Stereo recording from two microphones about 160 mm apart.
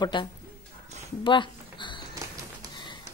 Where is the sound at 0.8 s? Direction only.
45° right (ahead or behind).